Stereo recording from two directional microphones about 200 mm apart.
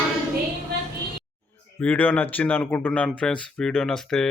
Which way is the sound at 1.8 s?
10° left (ahead or behind).